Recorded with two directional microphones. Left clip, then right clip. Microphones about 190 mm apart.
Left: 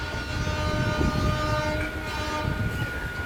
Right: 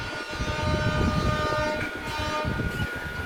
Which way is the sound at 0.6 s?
55° left (ahead or behind).